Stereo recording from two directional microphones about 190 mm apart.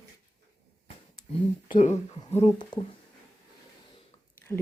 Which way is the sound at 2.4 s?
25° left (ahead or behind).